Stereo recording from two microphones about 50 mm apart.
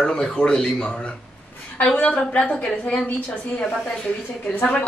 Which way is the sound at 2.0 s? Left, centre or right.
Left.